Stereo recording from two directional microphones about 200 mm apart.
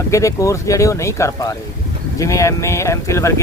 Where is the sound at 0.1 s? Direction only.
15° left (ahead or behind).